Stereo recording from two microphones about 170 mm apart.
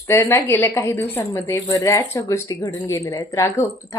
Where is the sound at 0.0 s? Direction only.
10° left (ahead or behind).